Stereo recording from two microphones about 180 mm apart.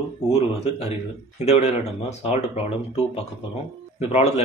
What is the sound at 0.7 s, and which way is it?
Speech, 35° left (ahead or behind).